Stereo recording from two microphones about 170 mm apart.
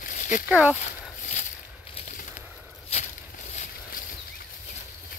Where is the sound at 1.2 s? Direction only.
45° left (ahead or behind).